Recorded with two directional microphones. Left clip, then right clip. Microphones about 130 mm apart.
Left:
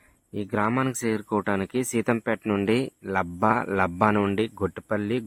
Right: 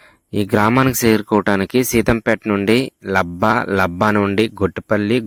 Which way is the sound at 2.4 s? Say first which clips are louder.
Right 7 dB; 25° right (ahead or behind).